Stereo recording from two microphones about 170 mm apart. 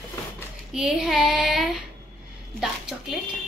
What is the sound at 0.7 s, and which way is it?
Speech, 5° right (ahead or behind).